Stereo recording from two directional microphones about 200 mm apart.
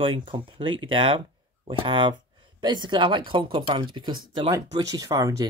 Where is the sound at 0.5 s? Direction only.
25° right (ahead or behind).